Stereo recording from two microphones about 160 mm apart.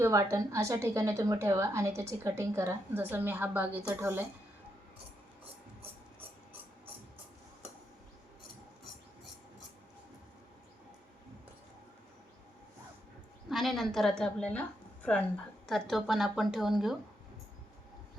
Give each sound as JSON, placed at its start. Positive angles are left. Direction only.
{"t": 0.0, "sound": "a woman's voice", "side_deg": -20}
{"t": 13.5, "sound": "a woman's voice", "side_deg": 0}